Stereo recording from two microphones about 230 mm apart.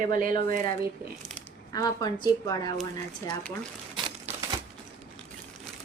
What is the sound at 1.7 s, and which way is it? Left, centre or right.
A woman's voice, centre.